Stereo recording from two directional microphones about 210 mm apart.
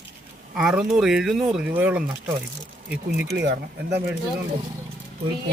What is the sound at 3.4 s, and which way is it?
Speech, 55° right (ahead or behind).